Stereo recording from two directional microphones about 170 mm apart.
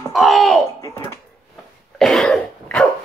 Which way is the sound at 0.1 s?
Centre (ahead or behind).